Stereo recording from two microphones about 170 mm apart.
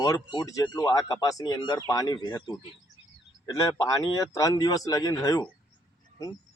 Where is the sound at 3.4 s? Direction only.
20° left (ahead or behind).